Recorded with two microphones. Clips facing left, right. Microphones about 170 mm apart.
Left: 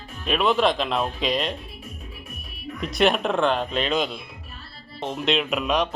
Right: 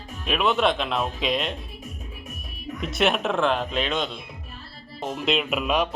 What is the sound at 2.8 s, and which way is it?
Speech, centre (ahead or behind).